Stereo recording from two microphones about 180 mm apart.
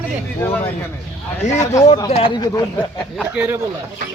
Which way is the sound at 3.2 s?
10° right (ahead or behind).